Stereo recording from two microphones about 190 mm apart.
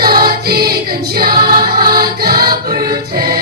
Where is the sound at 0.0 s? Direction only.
50° right (ahead or behind).